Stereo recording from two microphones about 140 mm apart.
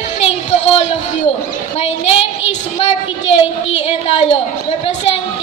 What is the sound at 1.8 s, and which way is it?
A woman's voice, 45° left (ahead or behind).